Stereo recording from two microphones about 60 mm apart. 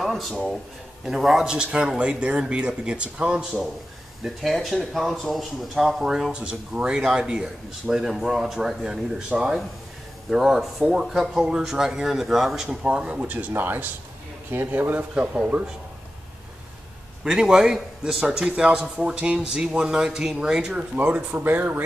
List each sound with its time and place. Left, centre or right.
0.0 s speech: centre
4.2 s speech: centre
8.0 s speech: centre
12.8 s speech: centre
17.2 s speech: centre
20.9 s speech: right